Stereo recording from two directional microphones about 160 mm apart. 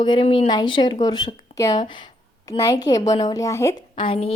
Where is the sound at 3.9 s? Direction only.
35° left (ahead or behind).